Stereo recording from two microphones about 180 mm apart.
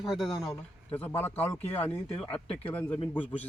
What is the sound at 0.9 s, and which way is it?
Speech, 10° left (ahead or behind).